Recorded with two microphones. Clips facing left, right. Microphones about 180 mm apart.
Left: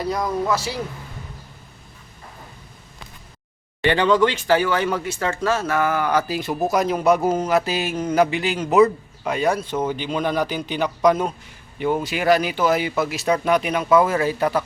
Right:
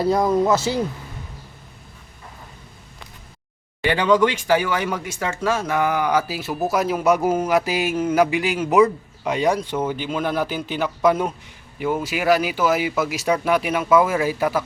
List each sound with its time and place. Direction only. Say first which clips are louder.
0.0 s speech: right 5 dB; 25° right (ahead or behind)
3.8 s speech: even; 10° right (ahead or behind)